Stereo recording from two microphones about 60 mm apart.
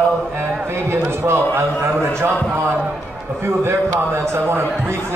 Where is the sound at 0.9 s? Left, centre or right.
Right.